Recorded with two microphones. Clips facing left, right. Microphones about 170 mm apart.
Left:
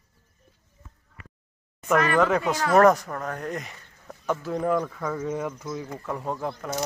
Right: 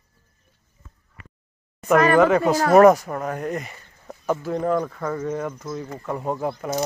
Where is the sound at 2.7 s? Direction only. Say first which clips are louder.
Right 4 dB; 10° right (ahead or behind).